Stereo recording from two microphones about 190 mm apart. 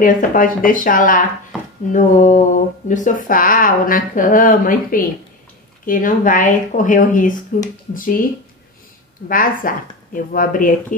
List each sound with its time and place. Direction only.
0.0 s speech: 45° left (ahead or behind)
9.3 s speech: 45° left (ahead or behind)